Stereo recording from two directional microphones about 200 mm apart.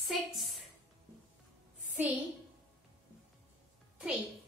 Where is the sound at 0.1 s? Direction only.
Centre (ahead or behind).